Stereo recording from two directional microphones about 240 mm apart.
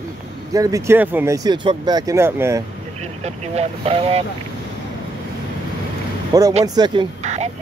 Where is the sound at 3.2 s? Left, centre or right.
Right.